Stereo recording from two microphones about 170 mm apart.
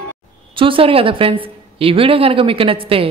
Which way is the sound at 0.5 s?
30° right (ahead or behind).